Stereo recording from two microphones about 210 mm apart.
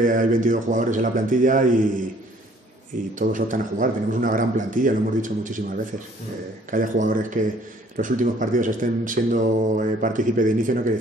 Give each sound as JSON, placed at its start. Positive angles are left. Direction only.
{"t": 0.0, "sound": "speech", "side_deg": -40}
{"t": 3.2, "sound": "speech", "side_deg": -40}
{"t": 6.7, "sound": "speech", "side_deg": -40}